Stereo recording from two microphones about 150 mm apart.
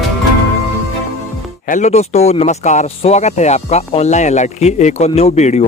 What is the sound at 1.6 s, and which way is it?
Speech, 55° left (ahead or behind).